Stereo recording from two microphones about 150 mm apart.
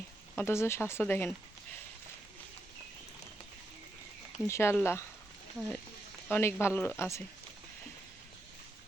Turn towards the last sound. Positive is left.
turn(degrees=20)  # may be behind; listen again after turning